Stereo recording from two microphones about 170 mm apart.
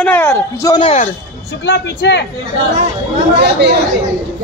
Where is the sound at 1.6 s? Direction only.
85° left.